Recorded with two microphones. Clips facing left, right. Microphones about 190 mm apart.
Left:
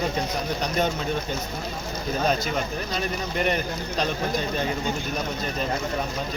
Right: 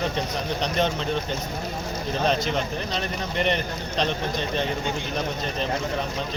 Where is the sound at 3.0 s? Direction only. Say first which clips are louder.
Left 2 dB; 5° left (ahead or behind).